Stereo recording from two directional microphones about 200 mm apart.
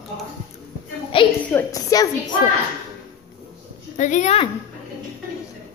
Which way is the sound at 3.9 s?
40° left (ahead or behind).